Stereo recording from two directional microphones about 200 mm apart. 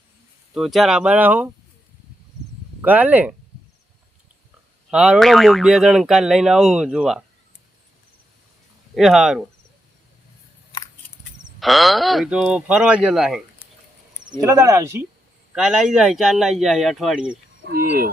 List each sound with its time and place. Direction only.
0.5 s speech: centre (ahead or behind)
2.8 s speech: 10° right (ahead or behind)
4.9 s speech: 5° right (ahead or behind)
9.0 s speech: centre (ahead or behind)
11.6 s speech: centre (ahead or behind)
14.4 s speech: 15° right (ahead or behind)
15.5 s speech: 5° right (ahead or behind)